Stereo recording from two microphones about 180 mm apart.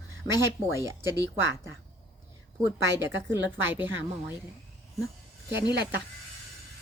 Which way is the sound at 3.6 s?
10° right (ahead or behind).